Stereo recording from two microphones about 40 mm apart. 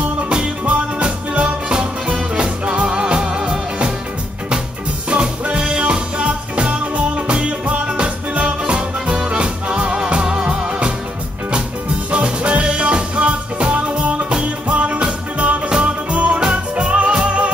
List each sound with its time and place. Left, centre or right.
0.7 s music: right
1.8 s music: centre
2.3 s music: right
5.1 s music: right
12.1 s music: right